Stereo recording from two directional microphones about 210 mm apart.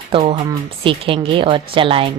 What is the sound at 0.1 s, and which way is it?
A woman's voice, 25° right (ahead or behind).